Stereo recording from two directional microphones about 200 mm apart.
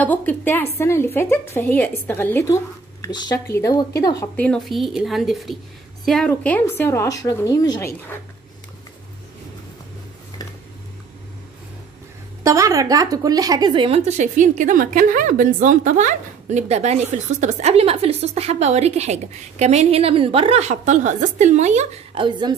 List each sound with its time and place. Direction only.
0.0 s a woman's voice: 10° left (ahead or behind)
4.4 s a woman's voice: 5° left (ahead or behind)
12.4 s a woman's voice: 15° right (ahead or behind)